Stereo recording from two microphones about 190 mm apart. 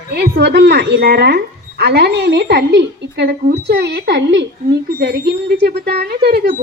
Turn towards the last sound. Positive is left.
turn(degrees=-55)  # may be behind; listen again after turning